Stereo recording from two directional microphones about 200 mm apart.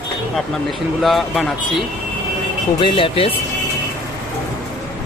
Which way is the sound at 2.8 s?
25° left (ahead or behind).